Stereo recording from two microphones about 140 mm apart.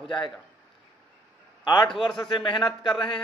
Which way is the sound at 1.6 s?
35° left (ahead or behind).